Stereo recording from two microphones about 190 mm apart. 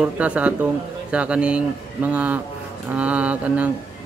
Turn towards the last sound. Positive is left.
turn(degrees=-5)  # may be behind; listen again after turning